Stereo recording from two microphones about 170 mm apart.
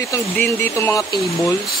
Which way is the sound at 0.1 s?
15° left (ahead or behind).